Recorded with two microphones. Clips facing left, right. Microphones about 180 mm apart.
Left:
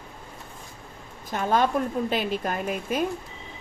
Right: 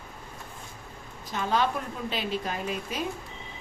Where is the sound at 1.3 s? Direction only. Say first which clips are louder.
Left 4 dB; 50° left (ahead or behind).